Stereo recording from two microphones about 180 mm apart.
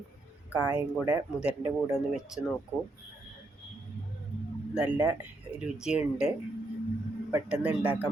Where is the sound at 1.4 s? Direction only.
5° right (ahead or behind).